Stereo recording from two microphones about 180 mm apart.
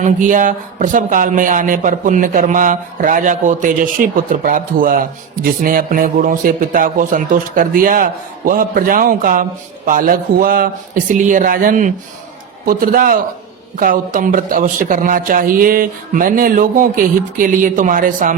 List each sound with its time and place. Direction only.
0.0 s speech: 45° right (ahead or behind)